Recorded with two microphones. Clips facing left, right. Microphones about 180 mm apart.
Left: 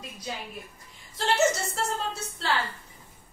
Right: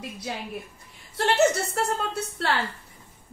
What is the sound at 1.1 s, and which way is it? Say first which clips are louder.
A woman's voice: right 3 dB; 65° right (ahead or behind).